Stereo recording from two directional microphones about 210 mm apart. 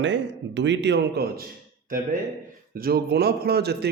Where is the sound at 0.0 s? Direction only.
60° right (ahead or behind).